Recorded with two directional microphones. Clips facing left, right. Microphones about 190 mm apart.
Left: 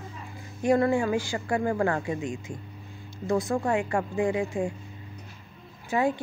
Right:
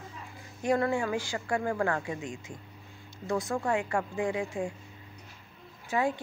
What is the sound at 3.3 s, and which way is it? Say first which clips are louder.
Speech: left 4 dB; 30° left (ahead or behind).